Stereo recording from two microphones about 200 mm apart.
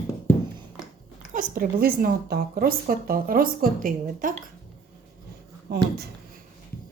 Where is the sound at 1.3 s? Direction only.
45° right (ahead or behind).